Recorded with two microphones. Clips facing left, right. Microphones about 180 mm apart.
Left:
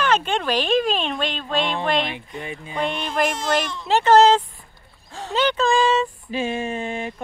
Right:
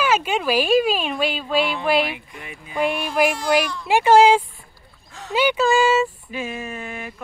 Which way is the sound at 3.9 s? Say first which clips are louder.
Right 1 dB; 10° right (ahead or behind).